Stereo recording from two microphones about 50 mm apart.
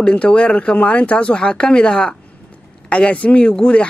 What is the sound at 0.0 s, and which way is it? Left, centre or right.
Speech, left.